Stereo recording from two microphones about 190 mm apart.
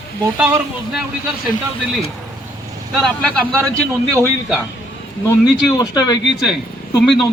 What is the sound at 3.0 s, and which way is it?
Speech, 5° left (ahead or behind).